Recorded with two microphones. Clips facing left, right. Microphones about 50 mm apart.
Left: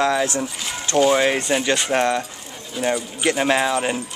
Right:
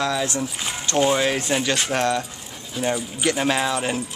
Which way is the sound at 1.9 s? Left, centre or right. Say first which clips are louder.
Left 3 dB; centre.